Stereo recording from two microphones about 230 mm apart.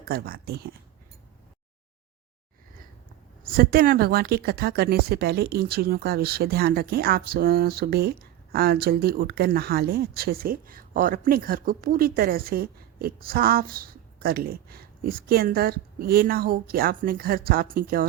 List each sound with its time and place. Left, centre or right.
0.0 s speech: right
3.4 s speech: right